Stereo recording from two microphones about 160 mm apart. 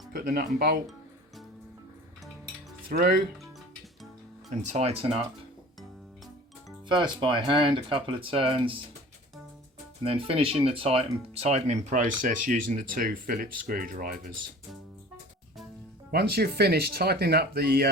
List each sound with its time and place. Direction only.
0.1 s speech: 65° right (ahead or behind)
4.6 s speech: 45° right (ahead or behind)
6.8 s speech: 30° right (ahead or behind)
10.0 s speech: 35° right (ahead or behind); by 14.3 s 60° right (ahead or behind)
16.1 s speech: 80° right